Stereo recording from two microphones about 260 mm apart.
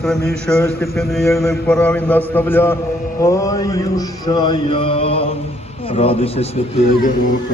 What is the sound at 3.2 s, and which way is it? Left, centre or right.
Mantra, centre.